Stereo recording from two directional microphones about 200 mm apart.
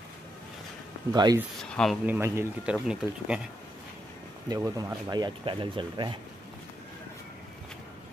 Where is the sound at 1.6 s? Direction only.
5° left (ahead or behind).